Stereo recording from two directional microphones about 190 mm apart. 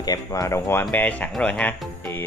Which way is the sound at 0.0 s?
20° left (ahead or behind).